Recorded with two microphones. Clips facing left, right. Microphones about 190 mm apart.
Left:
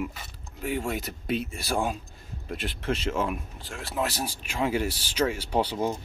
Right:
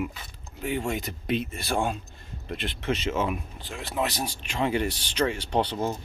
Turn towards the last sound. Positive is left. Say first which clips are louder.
# even
turn(degrees=10)  # may be behind; listen again after turning